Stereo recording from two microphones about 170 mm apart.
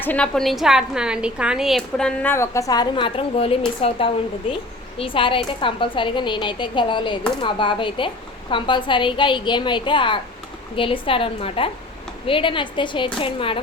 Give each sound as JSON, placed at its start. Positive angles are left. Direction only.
{"t": 0.0, "sound": "a woman's voice", "side_deg": 10}